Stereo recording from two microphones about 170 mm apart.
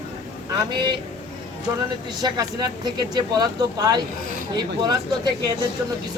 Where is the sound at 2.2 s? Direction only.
25° right (ahead or behind).